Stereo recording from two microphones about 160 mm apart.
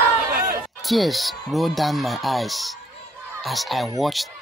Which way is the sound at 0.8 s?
Centre (ahead or behind).